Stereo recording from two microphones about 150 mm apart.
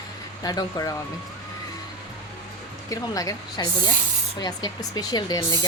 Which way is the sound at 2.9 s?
25° left (ahead or behind).